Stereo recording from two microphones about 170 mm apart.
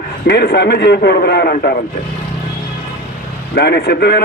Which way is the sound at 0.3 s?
70° left (ahead or behind).